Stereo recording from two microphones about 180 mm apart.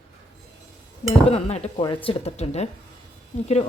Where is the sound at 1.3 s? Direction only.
35° left (ahead or behind).